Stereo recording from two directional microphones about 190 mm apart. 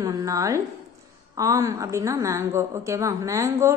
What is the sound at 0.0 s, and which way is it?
A woman's voice, 15° right (ahead or behind).